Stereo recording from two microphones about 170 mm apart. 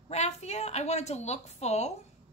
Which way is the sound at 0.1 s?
40° left (ahead or behind).